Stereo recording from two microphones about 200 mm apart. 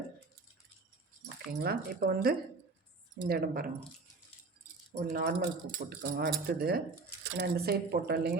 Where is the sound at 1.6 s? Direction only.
50° right (ahead or behind).